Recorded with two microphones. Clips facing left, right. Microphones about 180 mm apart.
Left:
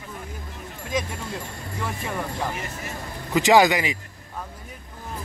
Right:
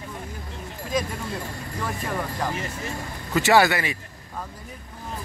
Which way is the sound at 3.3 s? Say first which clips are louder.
Left 2 dB; 15° left (ahead or behind).